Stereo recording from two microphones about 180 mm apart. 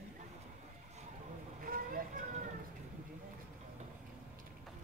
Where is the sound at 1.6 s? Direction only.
50° right (ahead or behind).